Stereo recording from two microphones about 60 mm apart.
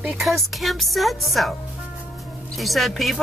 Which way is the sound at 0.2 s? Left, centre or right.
Centre.